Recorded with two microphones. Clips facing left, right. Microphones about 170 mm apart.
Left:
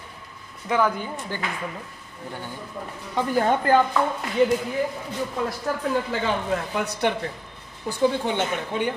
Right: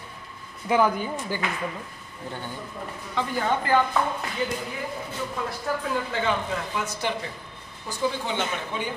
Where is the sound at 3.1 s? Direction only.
45° left (ahead or behind).